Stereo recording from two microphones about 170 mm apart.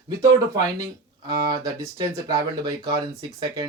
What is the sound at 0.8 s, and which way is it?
Speech, 25° right (ahead or behind).